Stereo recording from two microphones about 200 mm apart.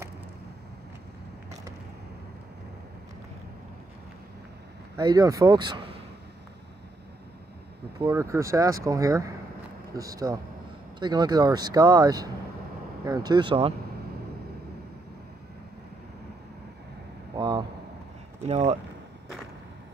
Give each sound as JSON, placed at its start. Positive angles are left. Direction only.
{"t": 4.9, "sound": "speech", "side_deg": -20}
{"t": 8.1, "sound": "speech", "side_deg": -15}
{"t": 17.4, "sound": "a sound", "side_deg": -25}
{"t": 18.4, "sound": "speech", "side_deg": -30}